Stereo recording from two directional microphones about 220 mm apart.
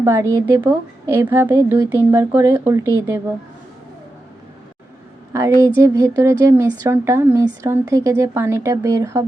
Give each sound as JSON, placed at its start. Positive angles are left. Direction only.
{"t": 0.0, "sound": "speech", "side_deg": -15}
{"t": 5.3, "sound": "speech", "side_deg": -15}